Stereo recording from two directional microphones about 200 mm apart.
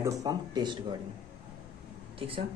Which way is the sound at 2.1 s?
25° right (ahead or behind).